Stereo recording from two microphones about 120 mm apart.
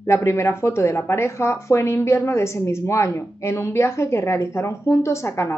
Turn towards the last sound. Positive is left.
turn(degrees=20)  # may be behind; listen again after turning